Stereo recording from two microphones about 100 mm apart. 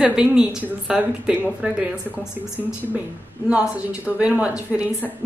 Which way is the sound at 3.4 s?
10° right (ahead or behind).